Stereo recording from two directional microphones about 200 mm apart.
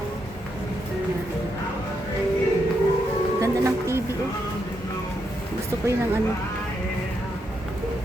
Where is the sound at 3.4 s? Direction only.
15° right (ahead or behind).